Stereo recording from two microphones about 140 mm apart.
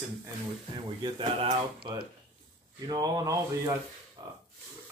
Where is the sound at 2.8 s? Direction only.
35° right (ahead or behind).